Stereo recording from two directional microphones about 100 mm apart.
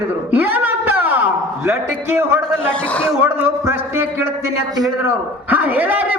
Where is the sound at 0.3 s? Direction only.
15° right (ahead or behind).